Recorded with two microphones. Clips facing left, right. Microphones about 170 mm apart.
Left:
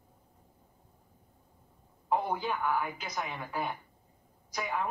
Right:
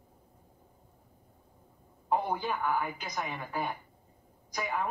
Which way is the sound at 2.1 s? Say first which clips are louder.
Even; centre (ahead or behind).